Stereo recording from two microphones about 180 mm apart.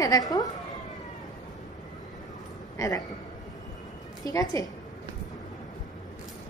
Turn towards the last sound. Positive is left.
turn(degrees=20)  # may be behind; listen again after turning